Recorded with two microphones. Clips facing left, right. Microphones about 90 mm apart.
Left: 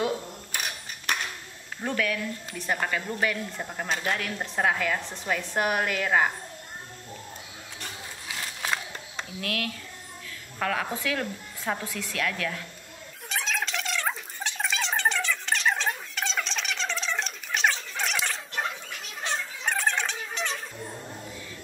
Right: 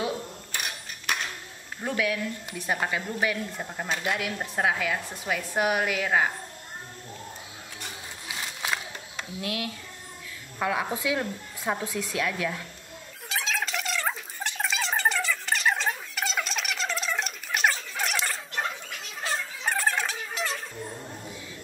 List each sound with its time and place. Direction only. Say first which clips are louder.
1.1 s dishes: even; centre (ahead or behind)
1.9 s speech: right 1 dB; 15° right (ahead or behind)
7.8 s printer: left 1 dB; 15° right (ahead or behind)
9.4 s speech: even; 20° right (ahead or behind)
13.3 s a sound: even; centre (ahead or behind)